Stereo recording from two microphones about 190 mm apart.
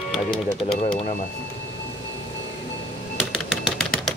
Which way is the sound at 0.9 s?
35° left (ahead or behind).